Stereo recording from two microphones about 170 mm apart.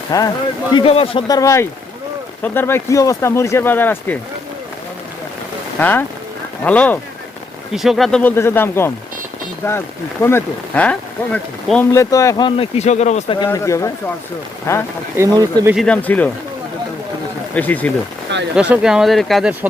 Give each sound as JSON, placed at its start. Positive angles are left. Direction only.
{"t": 0.1, "sound": "speech", "side_deg": 20}
{"t": 1.3, "sound": "speech", "side_deg": 20}
{"t": 5.8, "sound": "speech", "side_deg": 10}
{"t": 8.4, "sound": "speech", "side_deg": 15}
{"t": 11.9, "sound": "speech", "side_deg": 20}
{"t": 13.4, "sound": "speech", "side_deg": 20}
{"t": 15.1, "sound": "speech", "side_deg": -20}
{"t": 15.7, "sound": "speech", "side_deg": 5}
{"t": 17.5, "sound": "speech", "side_deg": 10}
{"t": 18.5, "sound": "speech", "side_deg": -5}